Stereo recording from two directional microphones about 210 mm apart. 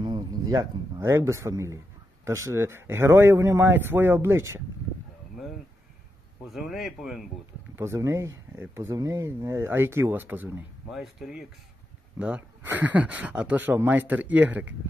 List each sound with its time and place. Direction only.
0.0 s speech: 20° right (ahead or behind)
6.5 s speech: centre (ahead or behind)
7.7 s speech: 15° right (ahead or behind)